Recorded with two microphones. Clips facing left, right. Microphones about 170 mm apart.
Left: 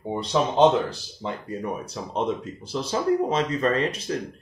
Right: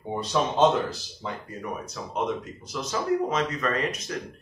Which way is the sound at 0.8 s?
30° left (ahead or behind).